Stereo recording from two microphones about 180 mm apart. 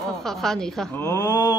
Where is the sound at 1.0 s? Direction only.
20° left (ahead or behind).